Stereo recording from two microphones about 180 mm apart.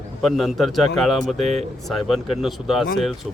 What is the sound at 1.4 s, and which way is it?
Speech, 35° right (ahead or behind).